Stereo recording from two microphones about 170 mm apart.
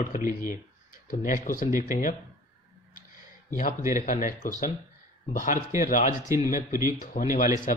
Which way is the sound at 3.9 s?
50° left (ahead or behind).